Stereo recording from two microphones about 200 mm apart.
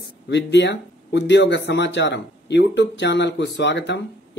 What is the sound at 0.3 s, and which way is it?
Speech, 60° left (ahead or behind).